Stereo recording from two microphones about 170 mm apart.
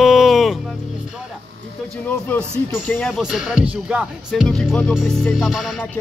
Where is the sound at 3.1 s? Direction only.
5° right (ahead or behind).